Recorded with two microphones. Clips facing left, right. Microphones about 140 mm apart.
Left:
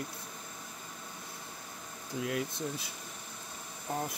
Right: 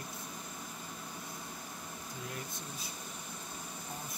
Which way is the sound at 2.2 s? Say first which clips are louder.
Left 12 dB; 90° left.